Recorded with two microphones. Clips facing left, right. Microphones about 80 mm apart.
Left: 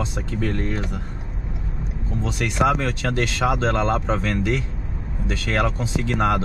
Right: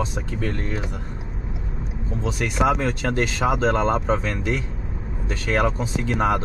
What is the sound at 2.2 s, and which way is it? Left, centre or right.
Speech, centre.